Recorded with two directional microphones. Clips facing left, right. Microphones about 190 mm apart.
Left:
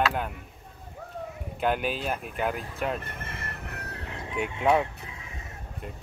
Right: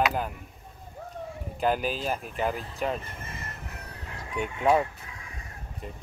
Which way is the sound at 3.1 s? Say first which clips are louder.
Left 2 dB; 65° left (ahead or behind).